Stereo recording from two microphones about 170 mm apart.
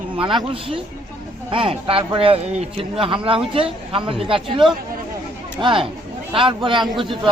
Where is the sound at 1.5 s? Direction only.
30° right (ahead or behind).